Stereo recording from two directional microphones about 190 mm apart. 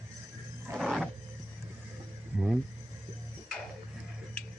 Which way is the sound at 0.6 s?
5° right (ahead or behind).